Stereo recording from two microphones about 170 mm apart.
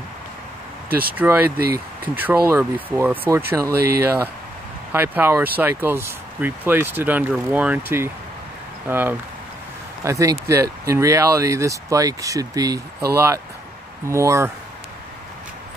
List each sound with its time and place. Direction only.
0.8 s speech: 60° right (ahead or behind)
1.1 s speech: 10° right (ahead or behind)
4.9 s speech: 10° right (ahead or behind)